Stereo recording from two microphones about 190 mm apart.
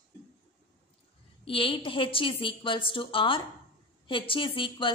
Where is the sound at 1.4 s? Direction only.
25° left (ahead or behind).